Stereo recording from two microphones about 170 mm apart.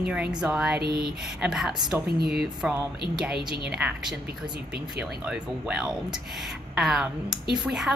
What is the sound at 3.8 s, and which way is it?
Speech, 5° right (ahead or behind).